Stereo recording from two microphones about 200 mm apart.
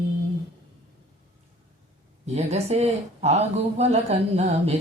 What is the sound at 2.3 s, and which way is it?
Speech, 35° right (ahead or behind).